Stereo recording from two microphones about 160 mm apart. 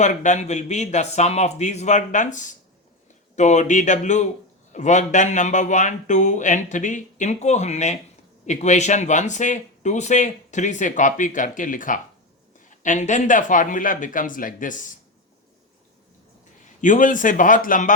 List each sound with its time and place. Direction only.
0.0 s speech: 50° left (ahead or behind)
16.6 s speech: 50° left (ahead or behind)